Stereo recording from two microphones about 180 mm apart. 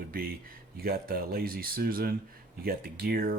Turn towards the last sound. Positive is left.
turn(degrees=-50)  # may be behind; listen again after turning